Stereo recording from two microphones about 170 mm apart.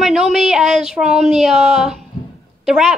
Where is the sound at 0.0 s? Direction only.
Centre (ahead or behind).